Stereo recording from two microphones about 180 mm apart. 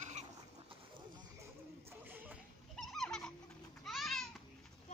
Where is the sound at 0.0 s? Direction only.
40° right (ahead or behind).